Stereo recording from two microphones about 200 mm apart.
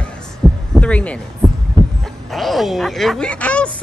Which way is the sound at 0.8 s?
5° left (ahead or behind).